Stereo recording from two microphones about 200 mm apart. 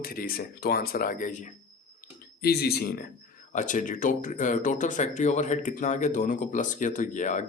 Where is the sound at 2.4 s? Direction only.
50° left (ahead or behind).